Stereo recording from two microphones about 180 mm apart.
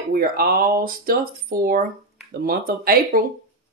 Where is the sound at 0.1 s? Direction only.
55° right (ahead or behind).